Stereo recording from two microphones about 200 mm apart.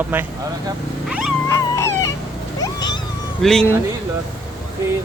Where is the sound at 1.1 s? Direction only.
5° right (ahead or behind).